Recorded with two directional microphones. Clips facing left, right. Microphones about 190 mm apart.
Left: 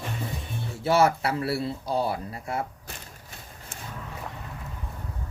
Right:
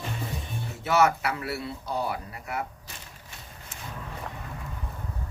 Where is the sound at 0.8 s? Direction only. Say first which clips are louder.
Left 2 dB; 30° left (ahead or behind).